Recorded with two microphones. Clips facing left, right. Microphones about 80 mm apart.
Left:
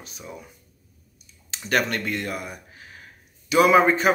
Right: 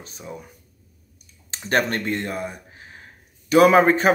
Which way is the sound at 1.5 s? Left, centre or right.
Right.